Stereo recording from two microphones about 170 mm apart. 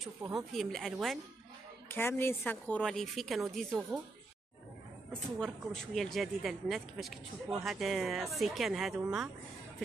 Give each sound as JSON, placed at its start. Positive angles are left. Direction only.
{"t": 0.5, "sound": "speech", "side_deg": 0}
{"t": 1.9, "sound": "speech", "side_deg": 15}
{"t": 5.4, "sound": "speech", "side_deg": 0}